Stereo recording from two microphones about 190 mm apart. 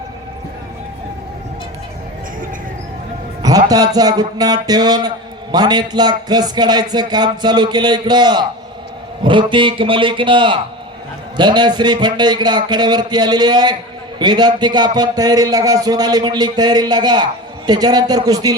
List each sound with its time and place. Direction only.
3.4 s music: 20° right (ahead or behind)